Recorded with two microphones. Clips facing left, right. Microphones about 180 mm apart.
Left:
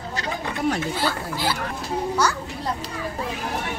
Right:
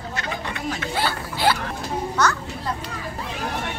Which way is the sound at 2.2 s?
10° left (ahead or behind).